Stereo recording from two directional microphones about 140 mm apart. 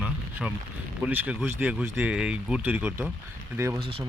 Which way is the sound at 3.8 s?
40° right (ahead or behind).